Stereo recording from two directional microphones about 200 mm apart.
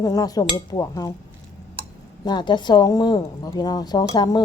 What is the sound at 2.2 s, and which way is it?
Speech, 20° left (ahead or behind).